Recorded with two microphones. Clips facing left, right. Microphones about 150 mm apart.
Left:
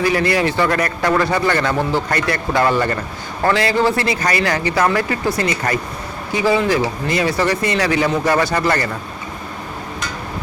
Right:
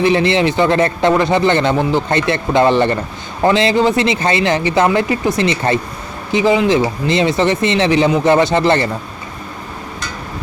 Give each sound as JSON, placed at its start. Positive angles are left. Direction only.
{"t": 0.0, "sound": "a man's voice", "side_deg": -25}